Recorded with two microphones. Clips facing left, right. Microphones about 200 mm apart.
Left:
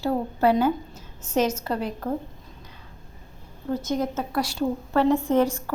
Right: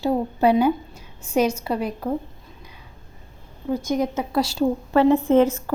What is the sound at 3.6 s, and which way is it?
A woman's voice, 10° right (ahead or behind).